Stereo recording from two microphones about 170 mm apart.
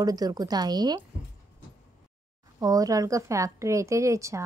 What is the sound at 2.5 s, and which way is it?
A woman's voice, 20° right (ahead or behind).